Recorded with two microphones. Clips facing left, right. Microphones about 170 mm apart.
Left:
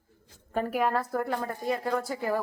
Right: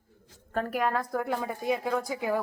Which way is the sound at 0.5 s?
10° left (ahead or behind).